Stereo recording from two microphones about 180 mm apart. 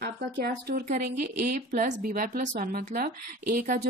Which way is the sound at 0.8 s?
50° right (ahead or behind).